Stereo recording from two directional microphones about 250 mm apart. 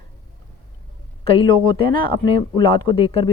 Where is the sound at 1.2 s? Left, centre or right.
Left.